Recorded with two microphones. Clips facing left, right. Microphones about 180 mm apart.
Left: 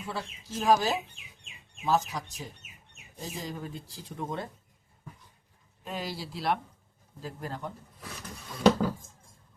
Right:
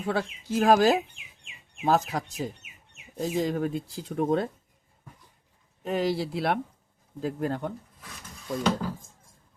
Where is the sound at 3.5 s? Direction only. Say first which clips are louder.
Right 11 dB; 65° right (ahead or behind).